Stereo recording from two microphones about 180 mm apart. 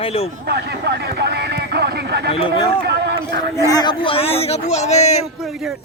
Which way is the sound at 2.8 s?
65° right (ahead or behind).